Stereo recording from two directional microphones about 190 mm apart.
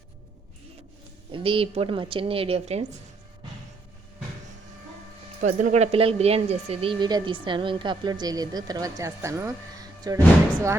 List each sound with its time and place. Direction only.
1.3 s speech: 30° right (ahead or behind)
5.4 s speech: 40° right (ahead or behind); by 10.2 s 20° right (ahead or behind)